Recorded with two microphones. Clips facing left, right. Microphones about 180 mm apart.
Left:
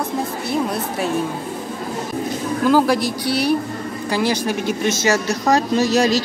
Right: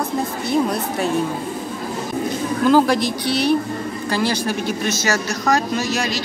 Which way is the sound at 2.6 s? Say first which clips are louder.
Right 1 dB; 5° left (ahead or behind).